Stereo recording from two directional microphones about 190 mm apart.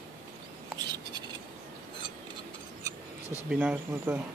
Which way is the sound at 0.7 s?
20° right (ahead or behind).